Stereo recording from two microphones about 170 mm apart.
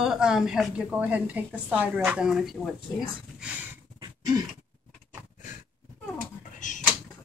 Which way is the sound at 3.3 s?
5° right (ahead or behind).